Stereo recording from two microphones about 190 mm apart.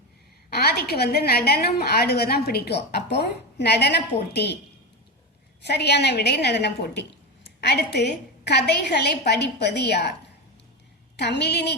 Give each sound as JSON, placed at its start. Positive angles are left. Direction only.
{"t": 0.5, "sound": "a woman's voice", "side_deg": 55}
{"t": 5.6, "sound": "a woman's voice", "side_deg": 60}
{"t": 11.2, "sound": "a woman's voice", "side_deg": 60}